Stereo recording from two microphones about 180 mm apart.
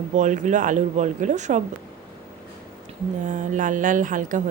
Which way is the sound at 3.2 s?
45° right (ahead or behind).